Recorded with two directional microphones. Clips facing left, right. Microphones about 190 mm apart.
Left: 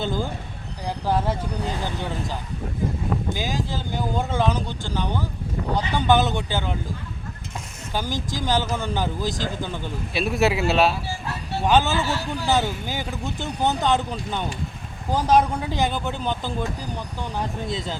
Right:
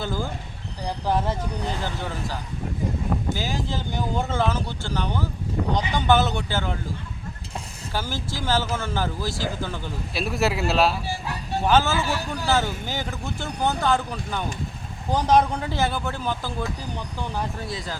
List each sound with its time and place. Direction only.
0.0 s vehicle: 20° left (ahead or behind)
1.0 s speech: 10° left (ahead or behind)
7.9 s speech: 15° left (ahead or behind)
10.2 s speech: centre (ahead or behind)
11.6 s speech: 15° left (ahead or behind)
15.1 s speech: 10° left (ahead or behind)